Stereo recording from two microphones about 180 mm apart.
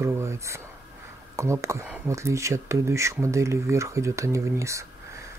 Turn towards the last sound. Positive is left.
turn(degrees=-15)  # may be behind; listen again after turning